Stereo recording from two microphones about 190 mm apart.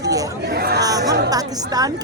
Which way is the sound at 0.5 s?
55° right (ahead or behind).